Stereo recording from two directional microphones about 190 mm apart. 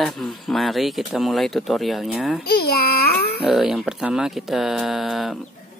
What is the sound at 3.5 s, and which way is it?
Speech, centre (ahead or behind).